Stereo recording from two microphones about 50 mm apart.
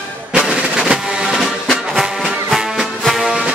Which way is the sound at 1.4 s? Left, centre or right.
Centre.